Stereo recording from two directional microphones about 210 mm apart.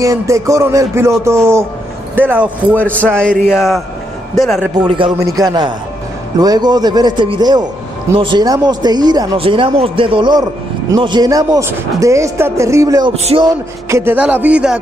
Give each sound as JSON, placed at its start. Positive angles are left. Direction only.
{"t": 0.0, "sound": "speech", "side_deg": -15}
{"t": 2.8, "sound": "a man's voice", "side_deg": 5}
{"t": 4.8, "sound": "speech", "side_deg": -25}
{"t": 13.1, "sound": "speech", "side_deg": -30}